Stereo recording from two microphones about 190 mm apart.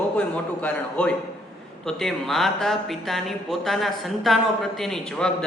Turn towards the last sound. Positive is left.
turn(degrees=5)  # may be behind; listen again after turning